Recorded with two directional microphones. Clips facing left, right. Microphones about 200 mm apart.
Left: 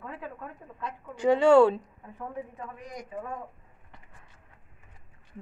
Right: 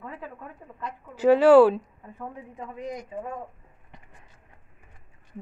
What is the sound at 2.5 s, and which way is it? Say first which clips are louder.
Speech: right 6 dB; 20° right (ahead or behind).